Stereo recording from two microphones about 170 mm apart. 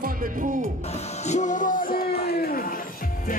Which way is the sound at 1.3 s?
45° left (ahead or behind).